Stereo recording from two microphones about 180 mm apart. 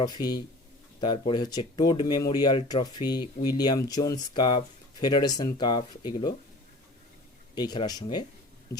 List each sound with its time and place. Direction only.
0.0 s speech: 25° left (ahead or behind)
7.5 s speech: 25° left (ahead or behind)